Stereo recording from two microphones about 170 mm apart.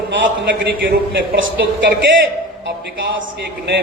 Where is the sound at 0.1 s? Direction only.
90° right.